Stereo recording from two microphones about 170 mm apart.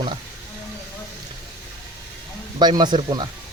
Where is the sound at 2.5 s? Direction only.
25° right (ahead or behind).